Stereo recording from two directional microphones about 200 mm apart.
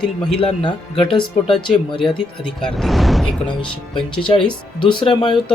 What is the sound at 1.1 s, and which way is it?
Speech, 25° left (ahead or behind).